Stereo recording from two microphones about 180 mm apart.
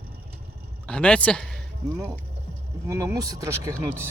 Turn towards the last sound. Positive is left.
turn(degrees=-15)  # may be behind; listen again after turning